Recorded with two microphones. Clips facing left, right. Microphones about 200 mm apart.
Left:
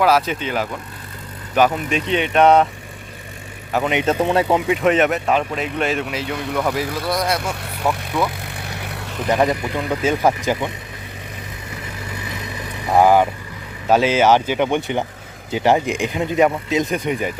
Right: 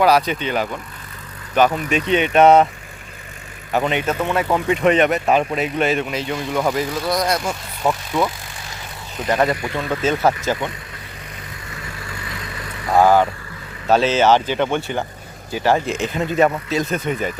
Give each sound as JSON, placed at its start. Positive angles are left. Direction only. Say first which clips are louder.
{"t": 0.0, "sound": "speech", "louder": "right 1 dB", "side_deg": 0}
{"t": 1.9, "sound": "speech", "louder": "right 2 dB", "side_deg": -5}
{"t": 3.7, "sound": "speech", "louder": "right 1 dB", "side_deg": 0}
{"t": 3.9, "sound": "speech", "louder": "left 3 dB", "side_deg": 30}
{"t": 4.4, "sound": "speech", "louder": "even", "side_deg": 10}
{"t": 7.9, "sound": "vehicle", "louder": "right 1 dB", "side_deg": -20}
{"t": 8.4, "sound": "vehicle", "louder": "left 5 dB", "side_deg": 60}
{"t": 9.2, "sound": "speech", "louder": "left 1 dB", "side_deg": 15}
{"t": 12.0, "sound": "vehicle", "louder": "left 3 dB", "side_deg": 20}
{"t": 13.8, "sound": "speech", "louder": "even", "side_deg": 10}